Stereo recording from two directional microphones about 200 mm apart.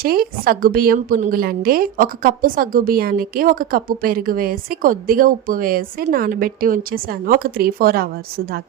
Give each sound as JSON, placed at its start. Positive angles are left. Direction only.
{"t": 0.0, "sound": "a woman's voice", "side_deg": -50}